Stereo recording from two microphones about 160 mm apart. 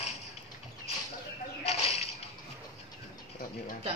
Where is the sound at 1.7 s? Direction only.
40° left (ahead or behind).